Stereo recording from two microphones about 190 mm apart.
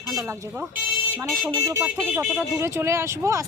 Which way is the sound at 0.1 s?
20° right (ahead or behind).